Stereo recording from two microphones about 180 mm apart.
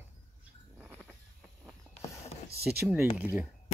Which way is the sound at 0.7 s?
5° right (ahead or behind).